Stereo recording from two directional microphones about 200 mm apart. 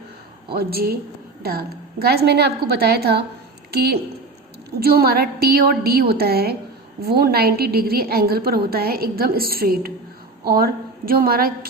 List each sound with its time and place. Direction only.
0.5 s a woman's voice: 50° right (ahead or behind)